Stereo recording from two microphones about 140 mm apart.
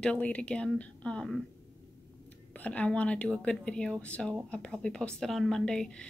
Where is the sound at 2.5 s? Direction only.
10° left (ahead or behind).